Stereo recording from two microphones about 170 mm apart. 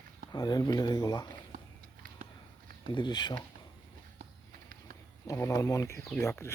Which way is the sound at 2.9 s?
25° left (ahead or behind).